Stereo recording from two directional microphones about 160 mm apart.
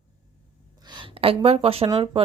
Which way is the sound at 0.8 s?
25° right (ahead or behind).